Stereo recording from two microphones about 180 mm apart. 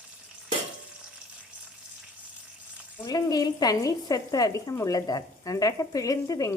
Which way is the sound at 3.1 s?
20° left (ahead or behind).